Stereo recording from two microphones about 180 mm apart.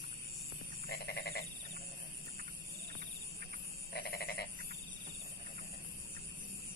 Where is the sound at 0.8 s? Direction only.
60° left (ahead or behind).